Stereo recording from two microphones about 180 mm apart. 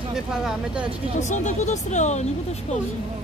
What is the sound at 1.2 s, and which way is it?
Speech, 40° left (ahead or behind).